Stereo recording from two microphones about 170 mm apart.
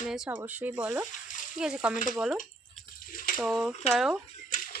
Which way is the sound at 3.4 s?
Centre (ahead or behind).